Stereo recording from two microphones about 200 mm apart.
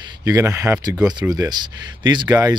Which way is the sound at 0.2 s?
15° right (ahead or behind).